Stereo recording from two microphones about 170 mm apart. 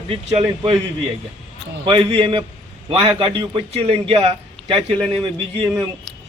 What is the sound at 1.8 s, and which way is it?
A man's voice, 30° right (ahead or behind).